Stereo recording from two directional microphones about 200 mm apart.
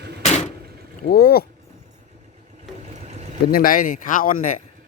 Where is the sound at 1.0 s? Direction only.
50° left (ahead or behind).